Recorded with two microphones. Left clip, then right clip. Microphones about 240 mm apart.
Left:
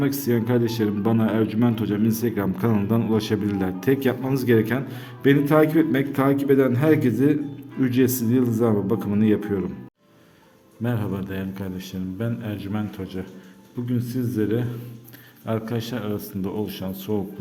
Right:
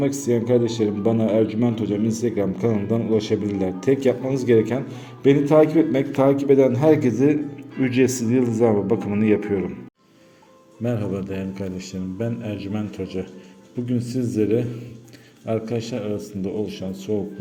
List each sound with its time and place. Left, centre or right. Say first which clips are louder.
0.0 s a man's voice: right 2 dB; centre
10.8 s a man's voice: right 3 dB; centre